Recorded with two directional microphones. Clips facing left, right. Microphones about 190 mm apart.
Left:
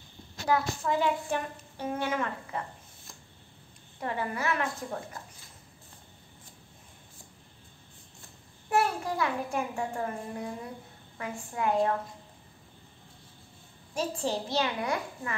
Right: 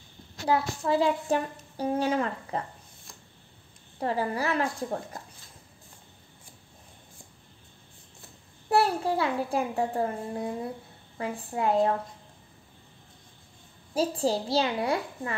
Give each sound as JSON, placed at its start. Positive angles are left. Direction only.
{"t": 0.5, "sound": "speech", "side_deg": -30}
{"t": 4.0, "sound": "speech", "side_deg": -35}
{"t": 8.6, "sound": "speech", "side_deg": -35}
{"t": 13.9, "sound": "speech", "side_deg": -35}